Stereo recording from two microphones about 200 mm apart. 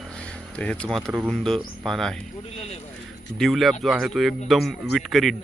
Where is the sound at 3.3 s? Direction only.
Centre (ahead or behind).